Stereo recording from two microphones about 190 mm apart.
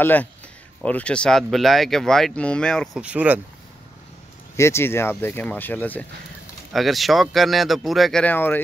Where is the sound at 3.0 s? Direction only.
5° right (ahead or behind).